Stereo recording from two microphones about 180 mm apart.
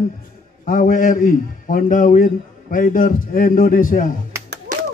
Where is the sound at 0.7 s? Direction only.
50° left (ahead or behind).